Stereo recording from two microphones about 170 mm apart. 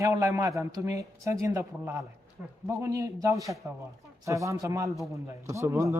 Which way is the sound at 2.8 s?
20° right (ahead or behind).